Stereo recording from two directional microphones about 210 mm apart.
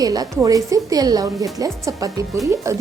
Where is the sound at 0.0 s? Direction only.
15° right (ahead or behind).